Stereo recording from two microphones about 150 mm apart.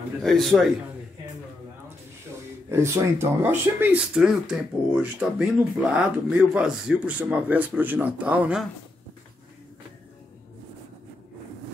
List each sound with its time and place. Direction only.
0.2 s a man's voice: centre (ahead or behind)
2.7 s speech: 15° right (ahead or behind)